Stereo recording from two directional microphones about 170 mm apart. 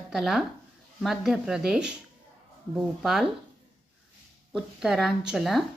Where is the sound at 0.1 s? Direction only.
Centre (ahead or behind).